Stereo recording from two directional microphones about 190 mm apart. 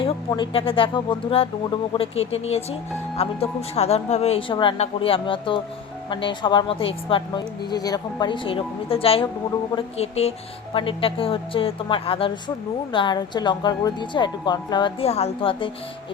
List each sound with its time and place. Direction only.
0.0 s a woman's voice: 25° left (ahead or behind)